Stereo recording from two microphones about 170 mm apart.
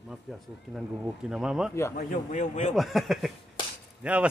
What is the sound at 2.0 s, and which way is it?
Speech, 50° left (ahead or behind).